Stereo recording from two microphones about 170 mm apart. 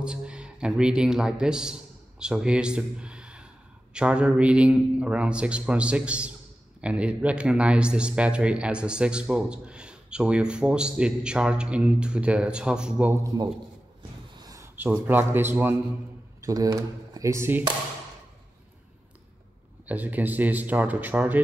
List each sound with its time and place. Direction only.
0.0 s a man's voice: 5° right (ahead or behind)
19.9 s a man's voice: 10° right (ahead or behind)